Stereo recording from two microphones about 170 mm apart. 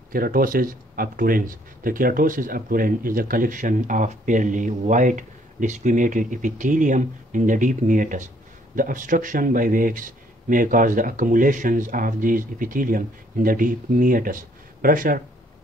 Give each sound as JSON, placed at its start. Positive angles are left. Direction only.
{"t": 0.1, "sound": "speech", "side_deg": -55}